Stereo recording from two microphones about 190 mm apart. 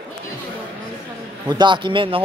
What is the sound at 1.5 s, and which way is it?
Speech, 25° right (ahead or behind).